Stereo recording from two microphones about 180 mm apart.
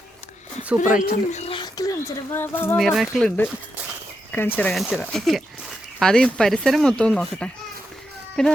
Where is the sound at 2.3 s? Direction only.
15° left (ahead or behind).